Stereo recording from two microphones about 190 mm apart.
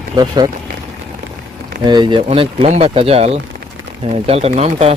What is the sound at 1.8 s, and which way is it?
Speech, 25° right (ahead or behind).